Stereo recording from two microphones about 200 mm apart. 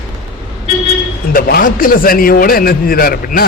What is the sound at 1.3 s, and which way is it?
A man's voice, 50° left (ahead or behind).